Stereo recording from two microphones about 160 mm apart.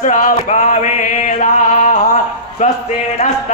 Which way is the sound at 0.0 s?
50° left (ahead or behind).